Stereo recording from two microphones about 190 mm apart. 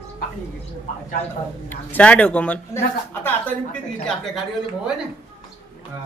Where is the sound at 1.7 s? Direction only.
10° left (ahead or behind).